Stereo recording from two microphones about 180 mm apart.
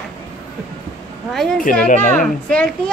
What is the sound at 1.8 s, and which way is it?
Speech, 45° left (ahead or behind).